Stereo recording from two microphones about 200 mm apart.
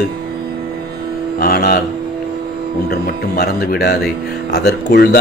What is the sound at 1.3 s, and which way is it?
Mantra, 50° left (ahead or behind).